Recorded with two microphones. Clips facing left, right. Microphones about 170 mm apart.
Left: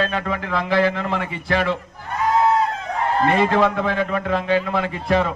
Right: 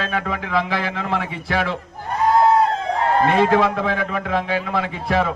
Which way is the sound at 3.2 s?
Centre (ahead or behind).